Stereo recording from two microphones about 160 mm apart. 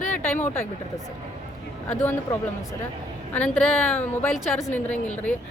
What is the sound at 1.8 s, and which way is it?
A woman's voice, 10° left (ahead or behind).